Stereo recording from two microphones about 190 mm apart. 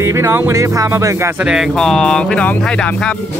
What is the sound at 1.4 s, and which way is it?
Speech, 5° right (ahead or behind).